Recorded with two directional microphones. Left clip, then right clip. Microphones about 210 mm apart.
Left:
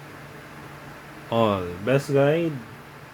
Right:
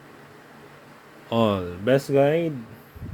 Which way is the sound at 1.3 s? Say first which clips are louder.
Left 1 dB; 25° right (ahead or behind).